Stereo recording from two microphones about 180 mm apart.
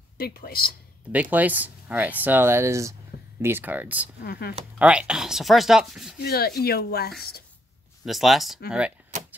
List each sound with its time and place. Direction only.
0.2 s speech: 55° left (ahead or behind)
1.1 s speech: 10° right (ahead or behind)
4.2 s speech: 60° left (ahead or behind)
4.7 s speech: 5° right (ahead or behind)
6.2 s speech: 60° left (ahead or behind)
8.0 s speech: centre (ahead or behind)